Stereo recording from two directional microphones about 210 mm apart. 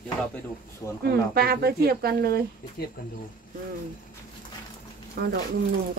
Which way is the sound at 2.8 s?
50° left (ahead or behind).